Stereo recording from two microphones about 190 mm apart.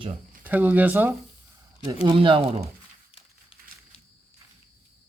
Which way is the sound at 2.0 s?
25° right (ahead or behind).